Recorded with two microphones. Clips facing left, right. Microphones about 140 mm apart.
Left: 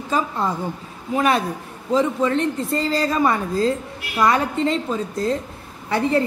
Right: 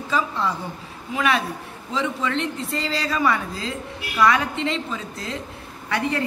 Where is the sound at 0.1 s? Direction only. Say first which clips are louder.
Left 2 dB; 45° left (ahead or behind).